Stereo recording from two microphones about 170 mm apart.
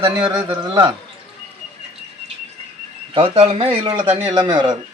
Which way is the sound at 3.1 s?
35° right (ahead or behind).